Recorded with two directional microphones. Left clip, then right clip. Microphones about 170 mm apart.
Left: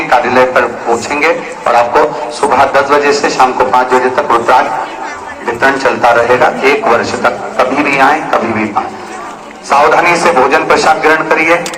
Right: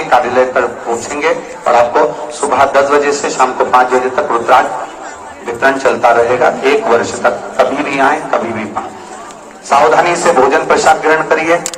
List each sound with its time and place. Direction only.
0.1 s a man's voice: 20° left (ahead or behind)
5.5 s a man's voice: 15° left (ahead or behind)
9.6 s a man's voice: 20° left (ahead or behind)